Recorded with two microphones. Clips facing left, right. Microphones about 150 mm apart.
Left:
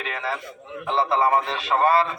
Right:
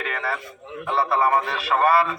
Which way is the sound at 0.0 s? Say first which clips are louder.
Right 1 dB; 20° left (ahead or behind).